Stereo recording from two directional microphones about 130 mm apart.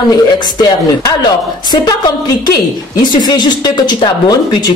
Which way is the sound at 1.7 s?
35° left (ahead or behind).